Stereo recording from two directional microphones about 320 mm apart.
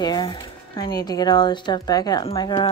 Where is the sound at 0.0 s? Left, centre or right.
Centre.